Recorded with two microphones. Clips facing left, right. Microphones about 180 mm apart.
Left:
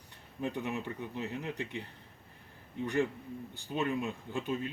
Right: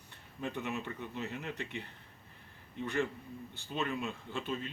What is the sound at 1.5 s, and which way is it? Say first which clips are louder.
Speech: left 3 dB; 35° left (ahead or behind).